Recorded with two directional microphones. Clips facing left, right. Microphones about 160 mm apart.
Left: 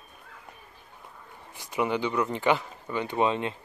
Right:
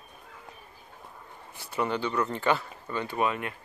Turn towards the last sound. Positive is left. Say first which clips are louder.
# left 3 dB
turn(degrees=25)  # may be behind; listen again after turning